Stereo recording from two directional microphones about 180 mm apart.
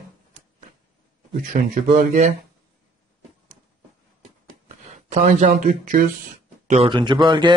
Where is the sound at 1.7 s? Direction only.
40° right (ahead or behind).